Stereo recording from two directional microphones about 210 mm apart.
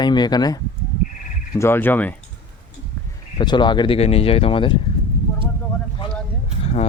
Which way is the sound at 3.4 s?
20° left (ahead or behind).